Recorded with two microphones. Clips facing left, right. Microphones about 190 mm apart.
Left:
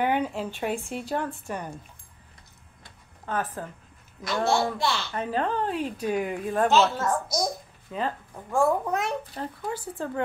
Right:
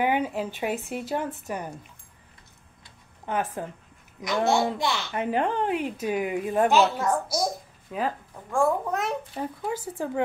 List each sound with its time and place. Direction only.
0.0 s a child's voice: 10° right (ahead or behind)
3.3 s a child's voice: 15° right (ahead or behind); by 9.1 s centre (ahead or behind)
9.3 s a child's voice: 10° right (ahead or behind)